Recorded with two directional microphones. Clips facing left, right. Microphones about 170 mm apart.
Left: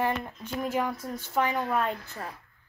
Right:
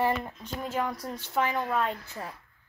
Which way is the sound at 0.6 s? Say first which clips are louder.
Left 2 dB; 10° left (ahead or behind).